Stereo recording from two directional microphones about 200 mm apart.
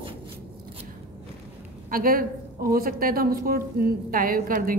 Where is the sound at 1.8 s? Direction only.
45° right (ahead or behind).